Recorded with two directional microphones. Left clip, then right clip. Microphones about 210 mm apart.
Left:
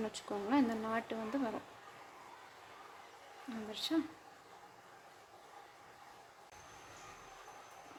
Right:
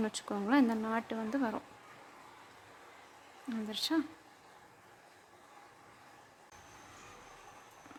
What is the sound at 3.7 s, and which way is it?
Speech, 25° right (ahead or behind).